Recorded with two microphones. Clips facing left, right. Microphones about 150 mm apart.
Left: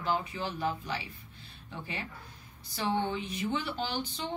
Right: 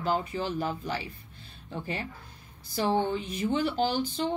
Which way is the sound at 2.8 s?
35° right (ahead or behind).